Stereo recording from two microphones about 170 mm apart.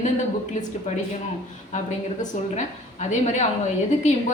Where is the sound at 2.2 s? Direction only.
45° left (ahead or behind).